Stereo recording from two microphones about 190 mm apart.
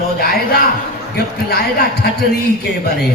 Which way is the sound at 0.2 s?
55° left (ahead or behind).